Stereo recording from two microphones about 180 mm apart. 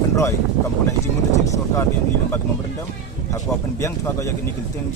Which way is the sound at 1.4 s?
15° left (ahead or behind).